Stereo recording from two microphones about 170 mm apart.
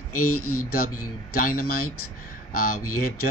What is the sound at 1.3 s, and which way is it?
A man's voice, 55° left (ahead or behind).